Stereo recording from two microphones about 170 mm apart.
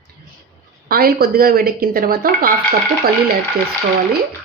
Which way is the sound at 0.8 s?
60° right (ahead or behind).